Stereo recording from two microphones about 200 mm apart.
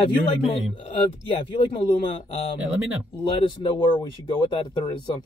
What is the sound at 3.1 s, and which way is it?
Speech, 20° left (ahead or behind).